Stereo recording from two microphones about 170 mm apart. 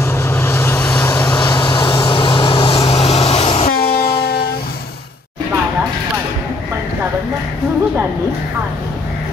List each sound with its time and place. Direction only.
0.0 s vehicle: 15° left (ahead or behind)
1.4 s vehicle: 25° left (ahead or behind)
3.7 s train: 65° left (ahead or behind)